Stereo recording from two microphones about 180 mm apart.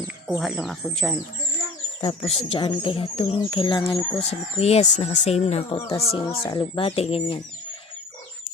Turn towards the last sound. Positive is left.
turn(degrees=35)  # may be behind; listen again after turning